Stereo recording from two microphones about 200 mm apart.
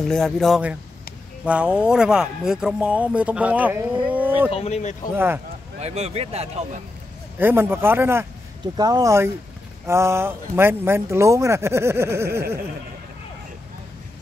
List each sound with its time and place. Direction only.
0.0 s speech: 5° left (ahead or behind)
4.5 s speech: 30° left (ahead or behind)
5.1 s speech: 10° right (ahead or behind)
5.8 s speech: 35° right (ahead or behind)
7.3 s speech: 10° right (ahead or behind)